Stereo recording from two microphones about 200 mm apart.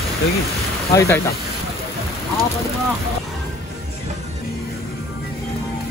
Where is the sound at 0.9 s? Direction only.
15° left (ahead or behind).